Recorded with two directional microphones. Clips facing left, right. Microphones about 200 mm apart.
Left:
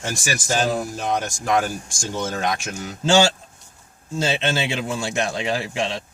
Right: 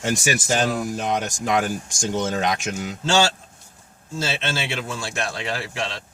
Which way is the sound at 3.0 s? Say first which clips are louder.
Left 4 dB; 15° left (ahead or behind).